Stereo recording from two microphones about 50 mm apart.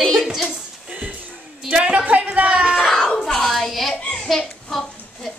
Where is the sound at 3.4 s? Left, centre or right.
Centre.